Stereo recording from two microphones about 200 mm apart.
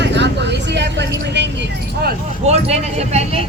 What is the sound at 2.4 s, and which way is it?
Speech, 35° right (ahead or behind).